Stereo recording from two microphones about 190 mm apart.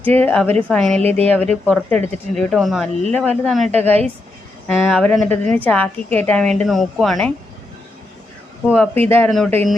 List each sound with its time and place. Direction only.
0.0 s a woman's voice: 10° left (ahead or behind)
1.0 s a woman's voice: 35° right (ahead or behind)
1.3 s a woman's voice: 5° left (ahead or behind)
8.7 s speech: 10° left (ahead or behind)